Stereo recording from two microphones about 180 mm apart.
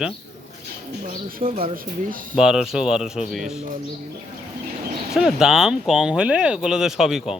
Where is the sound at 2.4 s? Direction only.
5° right (ahead or behind).